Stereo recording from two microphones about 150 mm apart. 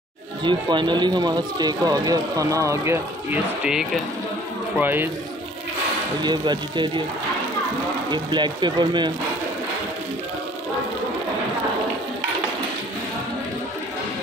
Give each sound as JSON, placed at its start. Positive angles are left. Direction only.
{"t": 0.4, "sound": "speech", "side_deg": -30}
{"t": 3.6, "sound": "speech", "side_deg": -5}
{"t": 6.2, "sound": "speech", "side_deg": -30}
{"t": 8.1, "sound": "speech", "side_deg": -30}